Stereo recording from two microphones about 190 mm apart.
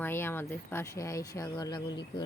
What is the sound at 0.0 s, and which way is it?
Speech, 10° left (ahead or behind).